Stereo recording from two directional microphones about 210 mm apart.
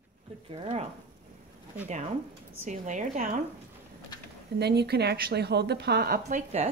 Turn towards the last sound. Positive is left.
turn(degrees=-35)  # may be behind; listen again after turning